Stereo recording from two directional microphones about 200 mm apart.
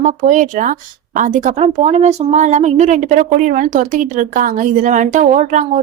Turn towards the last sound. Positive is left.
turn(degrees=-40)  # may be behind; listen again after turning